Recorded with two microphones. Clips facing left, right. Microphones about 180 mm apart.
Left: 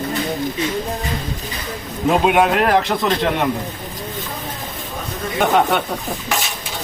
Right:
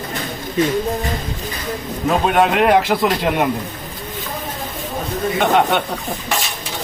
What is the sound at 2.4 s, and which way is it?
Speech, 5° right (ahead or behind).